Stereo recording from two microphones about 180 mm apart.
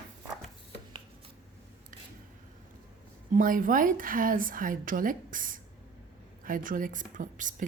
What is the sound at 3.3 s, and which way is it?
Speech, 50° right (ahead or behind).